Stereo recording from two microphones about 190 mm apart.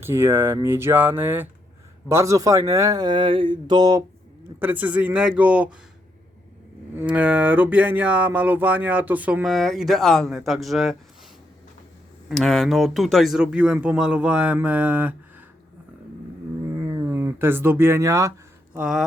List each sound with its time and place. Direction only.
0.0 s speech: 10° right (ahead or behind)
4.6 s speech: 10° right (ahead or behind)
6.9 s speech: 5° right (ahead or behind)
12.3 s speech: centre (ahead or behind)
16.7 s a sound: 20° right (ahead or behind)
18.8 s speech: centre (ahead or behind)